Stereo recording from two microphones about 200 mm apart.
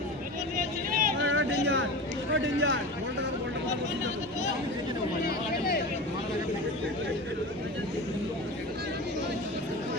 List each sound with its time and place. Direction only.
0.9 s vehicle: 45° right (ahead or behind)
1.2 s vehicle: 75° right (ahead or behind)
1.6 s a sound: 70° right (ahead or behind)
2.3 s speech: 70° right (ahead or behind)